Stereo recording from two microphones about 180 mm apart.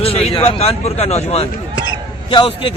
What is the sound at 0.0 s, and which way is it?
A man's voice, 35° left (ahead or behind).